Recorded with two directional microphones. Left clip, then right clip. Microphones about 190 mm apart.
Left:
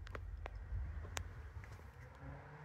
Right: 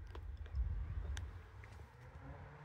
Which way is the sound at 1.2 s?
40° left (ahead or behind).